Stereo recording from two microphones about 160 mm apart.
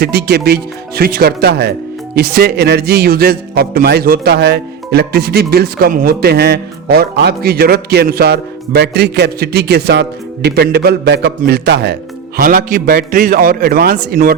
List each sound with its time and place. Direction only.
0.0 s a man's voice: 80° right
2.1 s a man's voice: 80° right
12.4 s a man's voice: 65° right (ahead or behind)